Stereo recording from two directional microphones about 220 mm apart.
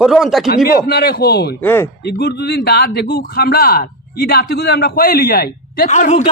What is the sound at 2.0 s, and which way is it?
Speech, 45° left (ahead or behind).